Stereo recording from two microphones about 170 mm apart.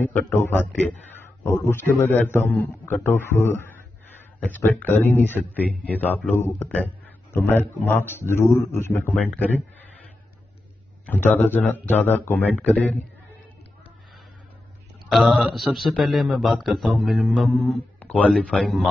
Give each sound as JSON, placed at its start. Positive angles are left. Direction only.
{"t": 0.0, "sound": "a man's voice", "side_deg": 15}
{"t": 11.1, "sound": "a man's voice", "side_deg": 10}
{"t": 15.0, "sound": "speech", "side_deg": 0}